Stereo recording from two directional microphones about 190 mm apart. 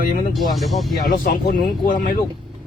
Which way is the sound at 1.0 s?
50° left (ahead or behind).